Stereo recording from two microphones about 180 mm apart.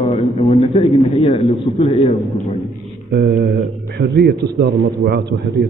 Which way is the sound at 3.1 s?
65° right (ahead or behind).